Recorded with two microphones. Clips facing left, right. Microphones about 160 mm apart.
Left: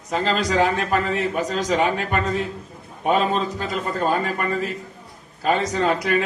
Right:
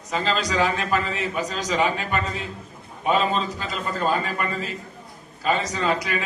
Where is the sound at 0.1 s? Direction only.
55° left (ahead or behind).